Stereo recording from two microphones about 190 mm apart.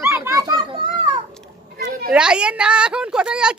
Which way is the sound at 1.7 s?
50° right (ahead or behind).